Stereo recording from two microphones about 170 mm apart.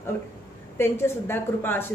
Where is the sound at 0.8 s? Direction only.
15° left (ahead or behind).